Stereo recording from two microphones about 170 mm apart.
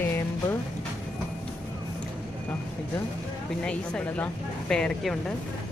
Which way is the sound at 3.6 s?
5° left (ahead or behind).